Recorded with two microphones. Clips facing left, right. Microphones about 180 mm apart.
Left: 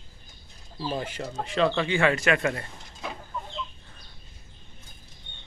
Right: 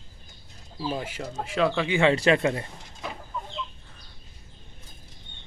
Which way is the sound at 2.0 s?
30° right (ahead or behind).